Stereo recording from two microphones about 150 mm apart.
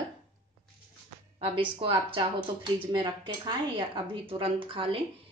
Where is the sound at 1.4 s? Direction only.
40° right (ahead or behind).